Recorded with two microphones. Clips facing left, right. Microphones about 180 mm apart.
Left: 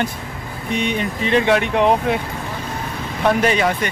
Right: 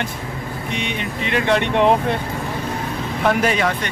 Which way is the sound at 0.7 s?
35° left (ahead or behind).